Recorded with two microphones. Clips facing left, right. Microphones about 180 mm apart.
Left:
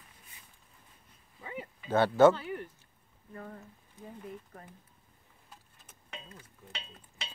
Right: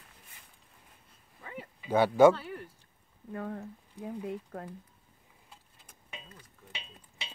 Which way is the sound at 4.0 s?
90° right.